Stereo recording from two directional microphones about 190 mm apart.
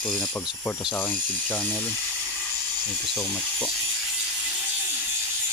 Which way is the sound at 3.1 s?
5° left (ahead or behind).